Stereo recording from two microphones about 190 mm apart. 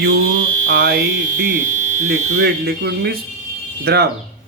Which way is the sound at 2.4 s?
60° right (ahead or behind).